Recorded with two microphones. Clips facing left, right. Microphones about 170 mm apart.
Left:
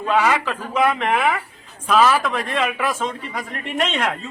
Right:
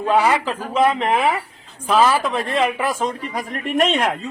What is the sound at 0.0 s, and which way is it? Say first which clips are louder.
Speech: right 2 dB; 30° right (ahead or behind).